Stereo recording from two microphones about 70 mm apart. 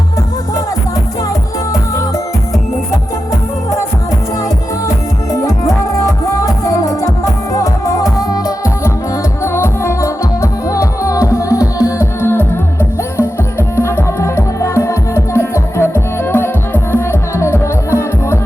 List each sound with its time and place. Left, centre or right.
6.2 s music: left
8.2 s music: left
9.4 s music: left
12.2 s music: left